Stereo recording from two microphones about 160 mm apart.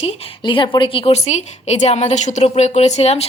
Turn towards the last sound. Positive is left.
turn(degrees=40)  # may be behind; listen again after turning